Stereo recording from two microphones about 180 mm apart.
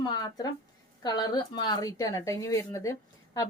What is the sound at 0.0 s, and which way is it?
Speech, 20° left (ahead or behind).